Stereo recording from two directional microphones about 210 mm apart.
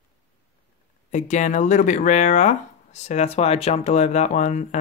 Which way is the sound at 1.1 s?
35° left (ahead or behind).